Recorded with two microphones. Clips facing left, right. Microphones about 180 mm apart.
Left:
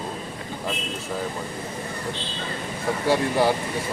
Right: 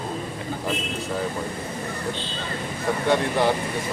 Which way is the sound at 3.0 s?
5° left (ahead or behind).